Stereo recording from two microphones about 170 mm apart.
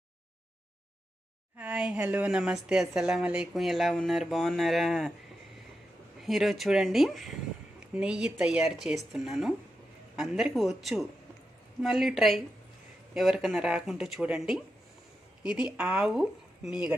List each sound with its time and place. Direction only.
1.5 s a woman's voice: 5° right (ahead or behind)
6.2 s a woman's voice: centre (ahead or behind)